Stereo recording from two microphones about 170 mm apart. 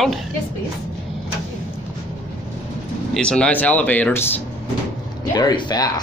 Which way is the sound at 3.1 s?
5° left (ahead or behind).